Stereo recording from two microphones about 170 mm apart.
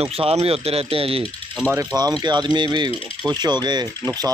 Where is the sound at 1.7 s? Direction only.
20° right (ahead or behind).